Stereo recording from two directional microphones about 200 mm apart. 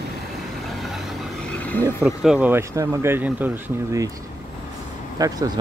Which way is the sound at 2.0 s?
5° right (ahead or behind).